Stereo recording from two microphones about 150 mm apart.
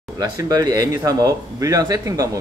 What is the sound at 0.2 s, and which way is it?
A man's voice, 25° right (ahead or behind).